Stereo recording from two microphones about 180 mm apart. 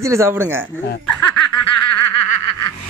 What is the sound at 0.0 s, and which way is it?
Speech, 15° right (ahead or behind).